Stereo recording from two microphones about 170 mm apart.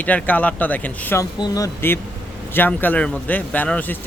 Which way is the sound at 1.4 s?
20° left (ahead or behind).